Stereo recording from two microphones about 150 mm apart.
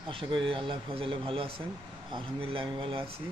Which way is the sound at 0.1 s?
35° right (ahead or behind).